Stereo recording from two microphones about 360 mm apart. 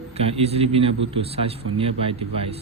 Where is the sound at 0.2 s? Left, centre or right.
Centre.